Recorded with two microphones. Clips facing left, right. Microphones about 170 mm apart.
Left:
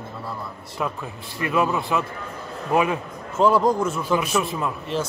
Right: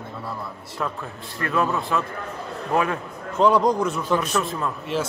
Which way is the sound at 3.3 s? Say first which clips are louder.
Even; centre (ahead or behind).